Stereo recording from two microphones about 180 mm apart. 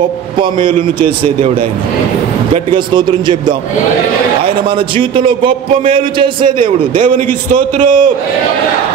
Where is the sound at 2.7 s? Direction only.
25° right (ahead or behind).